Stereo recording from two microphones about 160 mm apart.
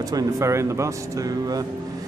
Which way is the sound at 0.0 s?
25° right (ahead or behind).